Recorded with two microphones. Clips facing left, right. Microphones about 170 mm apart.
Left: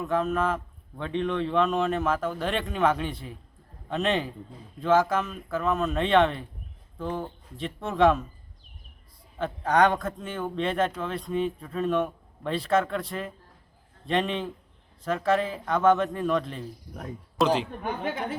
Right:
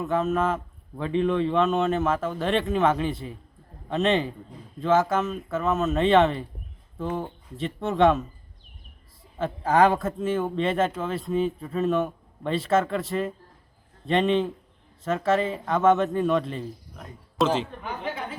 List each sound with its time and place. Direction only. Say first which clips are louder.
0.0 s speech: right 2 dB; centre (ahead or behind)
9.4 s speech: right 2 dB; centre (ahead or behind)
17.8 s a woman's voice: left 2 dB; 55° left (ahead or behind)